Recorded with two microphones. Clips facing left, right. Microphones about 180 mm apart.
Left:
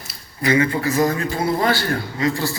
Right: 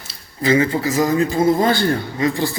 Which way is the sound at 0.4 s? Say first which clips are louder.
Right 2 dB; 25° right (ahead or behind).